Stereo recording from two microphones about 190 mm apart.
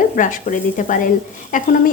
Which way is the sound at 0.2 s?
45° left (ahead or behind).